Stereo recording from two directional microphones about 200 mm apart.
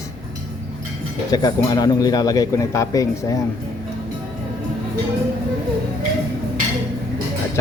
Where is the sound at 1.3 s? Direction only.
20° left (ahead or behind).